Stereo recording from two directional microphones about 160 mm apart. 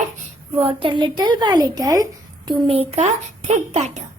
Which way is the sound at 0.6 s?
30° right (ahead or behind).